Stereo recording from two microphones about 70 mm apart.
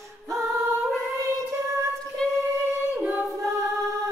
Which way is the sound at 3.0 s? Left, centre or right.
Right.